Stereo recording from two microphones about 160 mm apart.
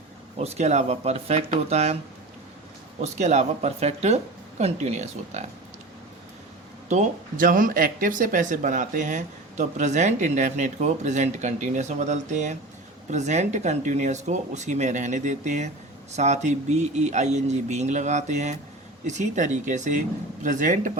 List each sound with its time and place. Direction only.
0.3 s speech: 40° right (ahead or behind)
3.0 s speech: 45° right (ahead or behind)
6.8 s speech: 55° right (ahead or behind)